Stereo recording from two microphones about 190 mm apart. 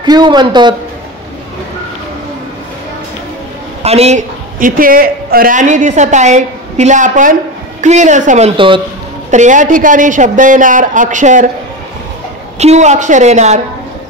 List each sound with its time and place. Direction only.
0.0 s a man's voice: 20° right (ahead or behind)
3.8 s speech: 35° right (ahead or behind)
8.5 s speech: 25° right (ahead or behind)
9.3 s a man's voice: 40° right (ahead or behind)
12.5 s speech: 35° right (ahead or behind)